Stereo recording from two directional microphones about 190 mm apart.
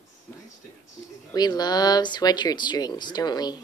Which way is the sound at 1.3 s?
20° left (ahead or behind).